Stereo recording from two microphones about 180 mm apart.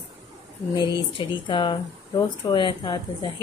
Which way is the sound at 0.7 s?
25° left (ahead or behind).